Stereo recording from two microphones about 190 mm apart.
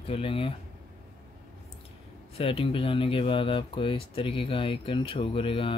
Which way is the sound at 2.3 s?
30° left (ahead or behind).